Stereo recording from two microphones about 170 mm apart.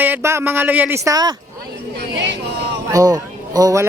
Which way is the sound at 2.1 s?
90° right.